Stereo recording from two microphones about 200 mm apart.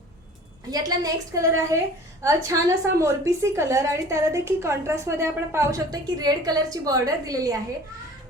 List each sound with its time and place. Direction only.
0.7 s a woman's voice: 20° right (ahead or behind)